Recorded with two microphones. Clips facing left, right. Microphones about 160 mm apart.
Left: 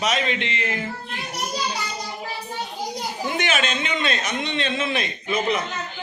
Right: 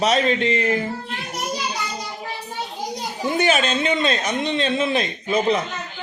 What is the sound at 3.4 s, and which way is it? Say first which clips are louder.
A man's voice: right 6 dB; 35° right (ahead or behind).